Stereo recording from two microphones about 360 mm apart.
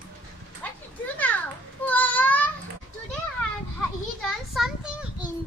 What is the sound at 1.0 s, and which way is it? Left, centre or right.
Children playing, centre.